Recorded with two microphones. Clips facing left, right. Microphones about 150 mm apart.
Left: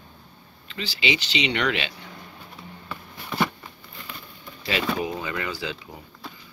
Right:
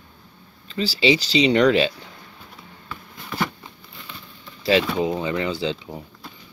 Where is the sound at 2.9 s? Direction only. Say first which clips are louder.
Even; 5° left (ahead or behind).